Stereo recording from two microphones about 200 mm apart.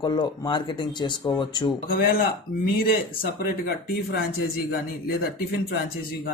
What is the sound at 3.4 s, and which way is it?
Speech, 50° left (ahead or behind).